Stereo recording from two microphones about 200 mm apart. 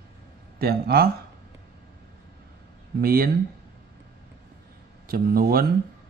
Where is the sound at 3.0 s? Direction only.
50° right (ahead or behind).